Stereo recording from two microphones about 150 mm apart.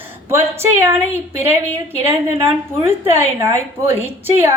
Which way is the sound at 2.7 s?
15° right (ahead or behind).